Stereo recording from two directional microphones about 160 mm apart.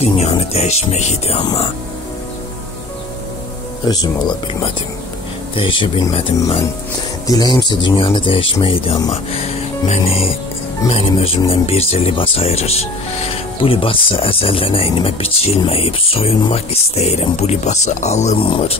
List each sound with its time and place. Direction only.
0.0 s speech: 40° left (ahead or behind)
3.8 s speech: 25° left (ahead or behind)
7.2 s speech: 25° left (ahead or behind)